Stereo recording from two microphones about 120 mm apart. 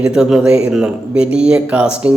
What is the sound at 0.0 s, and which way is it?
A man's voice, 5° right (ahead or behind).